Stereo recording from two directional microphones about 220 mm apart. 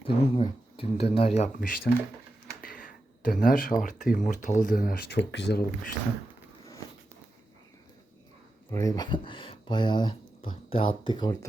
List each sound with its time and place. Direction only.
0.0 s speech: 25° left (ahead or behind); by 1.9 s 40° left (ahead or behind)
2.6 s a sound: 40° left (ahead or behind)
3.4 s speech: 40° left (ahead or behind)
8.7 s speech: 15° left (ahead or behind)